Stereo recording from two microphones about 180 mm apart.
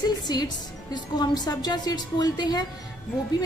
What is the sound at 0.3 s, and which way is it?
A woman's voice, 20° left (ahead or behind).